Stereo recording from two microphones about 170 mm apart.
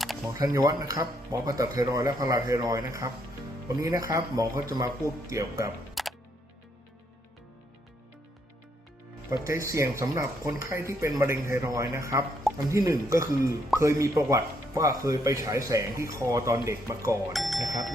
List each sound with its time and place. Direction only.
0.3 s speech: 20° right (ahead or behind)
5.9 s music: centre (ahead or behind)
9.3 s speech: 20° right (ahead or behind)
17.3 s music: centre (ahead or behind)